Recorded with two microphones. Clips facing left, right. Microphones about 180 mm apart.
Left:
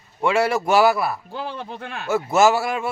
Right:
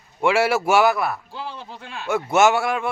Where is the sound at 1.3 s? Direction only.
55° left (ahead or behind).